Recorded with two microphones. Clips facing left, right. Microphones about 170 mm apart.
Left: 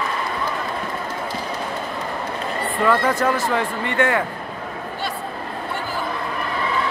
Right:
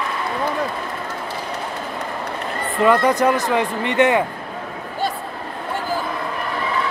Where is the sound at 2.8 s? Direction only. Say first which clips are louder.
Right 4 dB; 20° right (ahead or behind).